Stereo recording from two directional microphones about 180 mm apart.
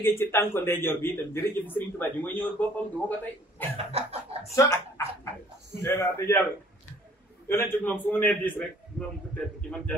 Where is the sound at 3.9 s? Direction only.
35° right (ahead or behind).